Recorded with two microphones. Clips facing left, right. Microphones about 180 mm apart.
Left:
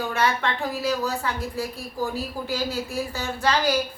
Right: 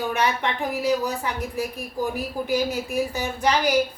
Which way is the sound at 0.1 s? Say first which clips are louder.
Even; 15° right (ahead or behind).